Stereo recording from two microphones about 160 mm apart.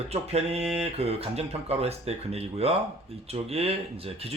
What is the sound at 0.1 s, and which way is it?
Speech, 40° right (ahead or behind).